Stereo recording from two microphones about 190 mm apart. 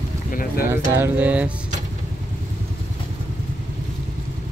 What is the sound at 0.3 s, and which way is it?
Speech, 45° left (ahead or behind).